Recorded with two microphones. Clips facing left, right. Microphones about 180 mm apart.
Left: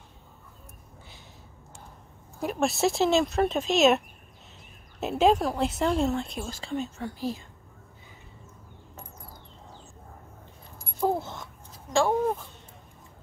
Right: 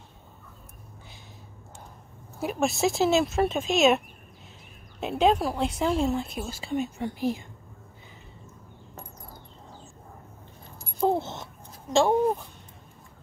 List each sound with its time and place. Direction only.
2.4 s a woman's voice: centre (ahead or behind)
5.0 s a woman's voice: centre (ahead or behind); by 7.4 s 15° right (ahead or behind)
10.8 s keys jangling: 25° right (ahead or behind)
11.9 s a sound: 20° right (ahead or behind)